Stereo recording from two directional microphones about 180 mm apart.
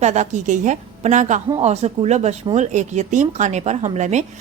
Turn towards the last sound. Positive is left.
turn(degrees=-40)  # may be behind; listen again after turning